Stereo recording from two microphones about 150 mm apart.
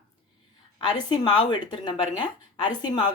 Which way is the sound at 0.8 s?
30° left (ahead or behind).